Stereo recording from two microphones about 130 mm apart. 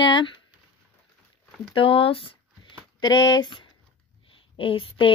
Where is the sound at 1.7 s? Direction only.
45° left (ahead or behind).